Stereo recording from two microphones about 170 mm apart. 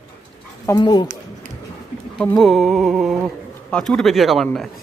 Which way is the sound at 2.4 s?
Centre (ahead or behind).